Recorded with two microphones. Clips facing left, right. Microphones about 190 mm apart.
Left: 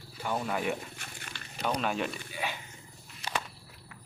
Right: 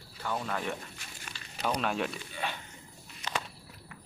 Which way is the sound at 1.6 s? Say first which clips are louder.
Even; centre (ahead or behind).